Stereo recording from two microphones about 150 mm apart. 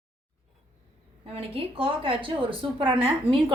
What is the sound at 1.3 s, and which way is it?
A woman's voice, 35° right (ahead or behind).